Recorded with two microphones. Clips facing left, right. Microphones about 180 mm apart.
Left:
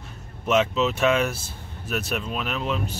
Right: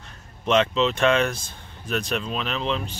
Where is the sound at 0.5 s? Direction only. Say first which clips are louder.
Right 1 dB; 5° left (ahead or behind).